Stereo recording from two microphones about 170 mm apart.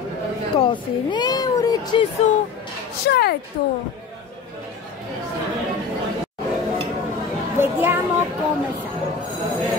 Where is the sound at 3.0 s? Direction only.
70° left (ahead or behind).